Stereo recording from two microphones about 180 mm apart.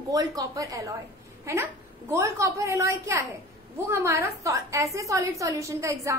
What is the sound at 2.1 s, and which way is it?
A woman's voice, 15° right (ahead or behind).